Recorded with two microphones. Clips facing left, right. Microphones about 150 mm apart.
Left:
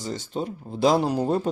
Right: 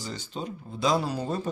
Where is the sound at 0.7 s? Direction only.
65° left (ahead or behind).